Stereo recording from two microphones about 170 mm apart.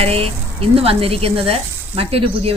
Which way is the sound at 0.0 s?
35° right (ahead or behind).